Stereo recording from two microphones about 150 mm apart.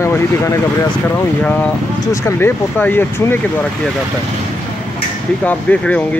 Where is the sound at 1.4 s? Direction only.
10° left (ahead or behind).